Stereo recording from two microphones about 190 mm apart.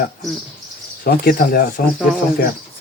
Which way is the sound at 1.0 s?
55° left (ahead or behind).